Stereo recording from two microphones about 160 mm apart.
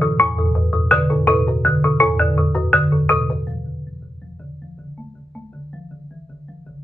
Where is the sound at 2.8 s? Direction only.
20° left (ahead or behind).